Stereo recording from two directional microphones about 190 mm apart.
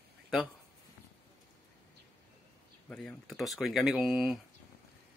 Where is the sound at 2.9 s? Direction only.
Centre (ahead or behind).